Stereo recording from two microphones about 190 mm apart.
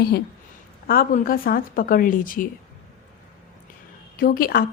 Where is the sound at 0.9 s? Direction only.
50° left (ahead or behind).